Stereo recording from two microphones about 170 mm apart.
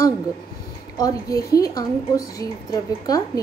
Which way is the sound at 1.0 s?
20° left (ahead or behind).